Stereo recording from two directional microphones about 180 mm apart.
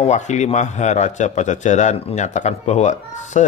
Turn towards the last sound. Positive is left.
turn(degrees=40)  # may be behind; listen again after turning